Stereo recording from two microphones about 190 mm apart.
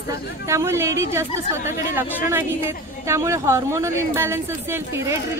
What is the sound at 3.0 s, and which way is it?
Speech, 15° right (ahead or behind).